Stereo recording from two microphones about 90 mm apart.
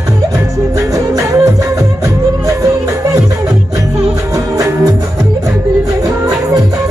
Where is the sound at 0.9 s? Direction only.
40° right (ahead or behind).